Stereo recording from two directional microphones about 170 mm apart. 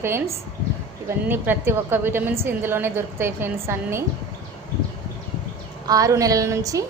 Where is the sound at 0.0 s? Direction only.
15° right (ahead or behind).